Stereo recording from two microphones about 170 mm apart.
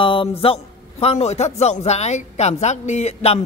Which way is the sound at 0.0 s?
30° left (ahead or behind).